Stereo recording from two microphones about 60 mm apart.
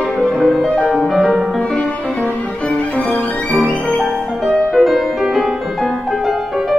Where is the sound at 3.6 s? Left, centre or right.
Left.